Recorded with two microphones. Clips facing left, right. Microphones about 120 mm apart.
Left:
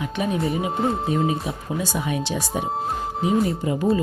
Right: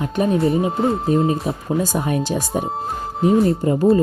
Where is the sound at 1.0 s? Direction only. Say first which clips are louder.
Right 5 dB; 40° right (ahead or behind).